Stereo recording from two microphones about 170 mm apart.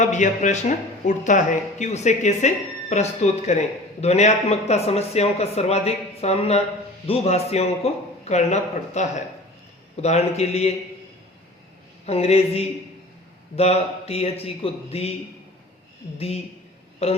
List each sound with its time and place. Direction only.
0.0 s speech: 45° left (ahead or behind)
12.0 s speech: 40° left (ahead or behind)
16.1 s speech: 35° left (ahead or behind)